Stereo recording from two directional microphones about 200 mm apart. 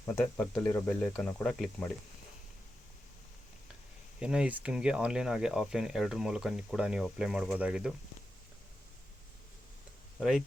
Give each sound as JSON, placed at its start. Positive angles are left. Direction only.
{"t": 0.0, "sound": "speech", "side_deg": 10}
{"t": 4.2, "sound": "speech", "side_deg": -5}
{"t": 10.2, "sound": "speech", "side_deg": 0}